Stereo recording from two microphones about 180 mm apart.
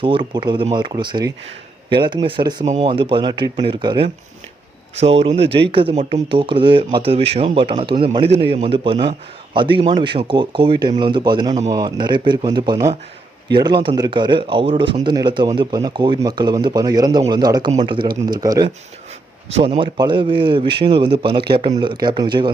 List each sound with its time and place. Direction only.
0.0 s speech: 25° right (ahead or behind)